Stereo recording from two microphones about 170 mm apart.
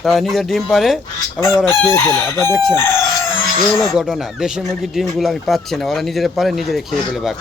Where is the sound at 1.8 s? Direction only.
15° left (ahead or behind).